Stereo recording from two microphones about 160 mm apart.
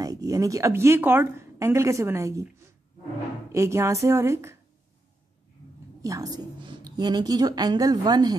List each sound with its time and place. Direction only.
0.0 s a woman's voice: 20° right (ahead or behind)
6.0 s a woman's voice: 20° right (ahead or behind)